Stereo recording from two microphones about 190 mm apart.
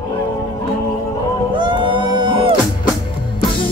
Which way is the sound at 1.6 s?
25° right (ahead or behind).